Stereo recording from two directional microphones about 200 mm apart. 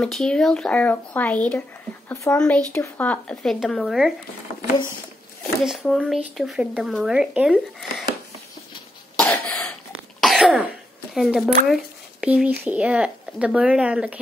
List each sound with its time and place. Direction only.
0.0 s speech: 5° left (ahead or behind)
5.6 s speech: centre (ahead or behind)
9.5 s cough: centre (ahead or behind)
11.1 s speech: centre (ahead or behind)